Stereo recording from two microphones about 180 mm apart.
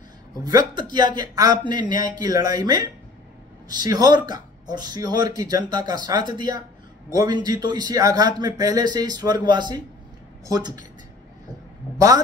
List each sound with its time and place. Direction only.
0.4 s a man's voice: 20° right (ahead or behind)